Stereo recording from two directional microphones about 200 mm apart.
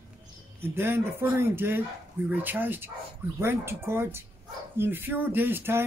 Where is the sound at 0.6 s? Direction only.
10° right (ahead or behind).